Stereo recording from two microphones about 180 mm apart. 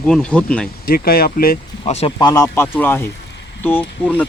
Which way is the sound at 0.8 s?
55° left (ahead or behind).